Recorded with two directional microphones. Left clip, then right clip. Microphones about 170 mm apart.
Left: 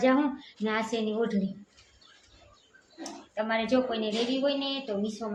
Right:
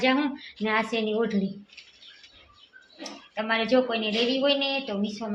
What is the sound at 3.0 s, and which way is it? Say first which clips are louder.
A woman's voice: right 1 dB; 20° right (ahead or behind).